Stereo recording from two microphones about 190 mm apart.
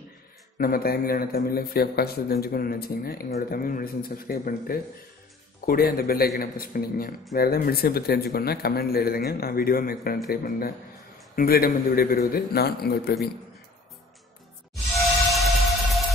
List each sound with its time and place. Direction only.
0.6 s speech: 50° left (ahead or behind)
15.3 s music: centre (ahead or behind)